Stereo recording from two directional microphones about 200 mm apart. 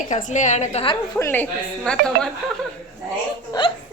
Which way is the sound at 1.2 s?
10° left (ahead or behind).